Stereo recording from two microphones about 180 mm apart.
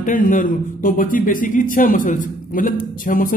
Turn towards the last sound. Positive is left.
turn(degrees=50)  # may be behind; listen again after turning